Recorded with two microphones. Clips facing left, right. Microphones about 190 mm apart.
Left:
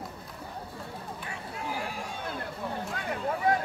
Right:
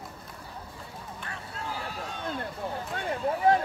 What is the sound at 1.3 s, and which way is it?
Vehicle, 15° left (ahead or behind).